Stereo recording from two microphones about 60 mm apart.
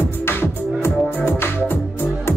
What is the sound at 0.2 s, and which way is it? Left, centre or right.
Music, left.